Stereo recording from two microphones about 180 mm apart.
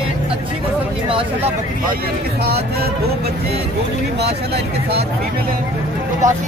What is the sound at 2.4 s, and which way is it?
Speech, 60° right (ahead or behind).